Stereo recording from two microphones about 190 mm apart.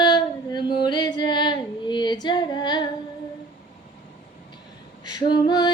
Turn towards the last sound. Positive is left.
turn(degrees=20)  # may be behind; listen again after turning